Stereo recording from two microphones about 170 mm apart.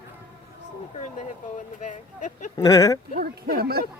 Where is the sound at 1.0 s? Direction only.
45° left (ahead or behind).